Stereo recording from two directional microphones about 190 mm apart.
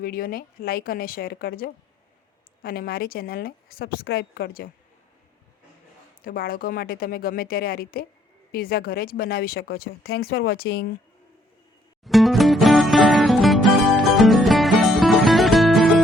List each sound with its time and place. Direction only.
0.0 s speech: 50° left (ahead or behind)
6.2 s speech: 50° left (ahead or behind)
12.0 s music: centre (ahead or behind)